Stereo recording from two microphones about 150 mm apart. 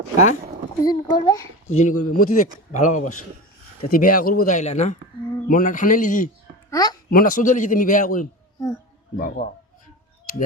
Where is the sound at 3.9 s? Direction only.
65° left (ahead or behind); by 4.9 s 50° left (ahead or behind).